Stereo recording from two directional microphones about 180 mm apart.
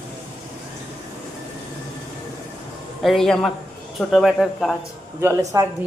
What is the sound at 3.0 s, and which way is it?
Speech, centre (ahead or behind).